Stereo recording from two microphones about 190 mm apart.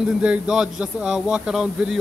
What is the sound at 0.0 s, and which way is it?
Speech, 5° right (ahead or behind).